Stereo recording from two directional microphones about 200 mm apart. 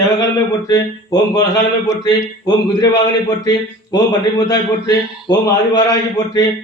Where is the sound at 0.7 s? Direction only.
20° left (ahead or behind).